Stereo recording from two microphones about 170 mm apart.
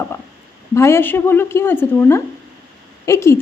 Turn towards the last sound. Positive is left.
turn(degrees=15)  # may be behind; listen again after turning